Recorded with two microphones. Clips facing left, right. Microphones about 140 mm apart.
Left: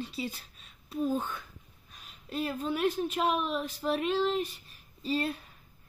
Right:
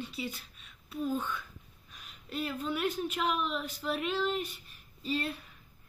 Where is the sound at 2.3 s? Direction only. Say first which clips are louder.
Left 2 dB; 35° left (ahead or behind).